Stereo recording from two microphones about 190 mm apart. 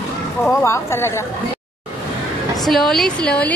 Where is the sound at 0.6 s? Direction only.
15° left (ahead or behind).